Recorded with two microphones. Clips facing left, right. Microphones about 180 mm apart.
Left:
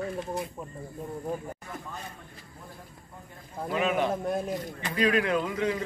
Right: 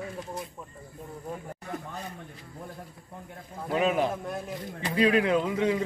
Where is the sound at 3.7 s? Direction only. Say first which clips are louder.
Right 2 dB; 35° right (ahead or behind).